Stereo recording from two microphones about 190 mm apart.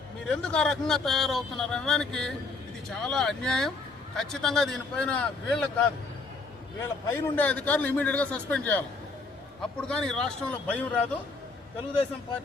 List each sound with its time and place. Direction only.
0.3 s speech: 5° left (ahead or behind)
6.8 s a man's voice: 10° left (ahead or behind)
9.8 s speech: 5° left (ahead or behind)